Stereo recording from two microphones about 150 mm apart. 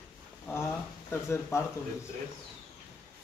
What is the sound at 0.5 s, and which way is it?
Speech, 15° left (ahead or behind).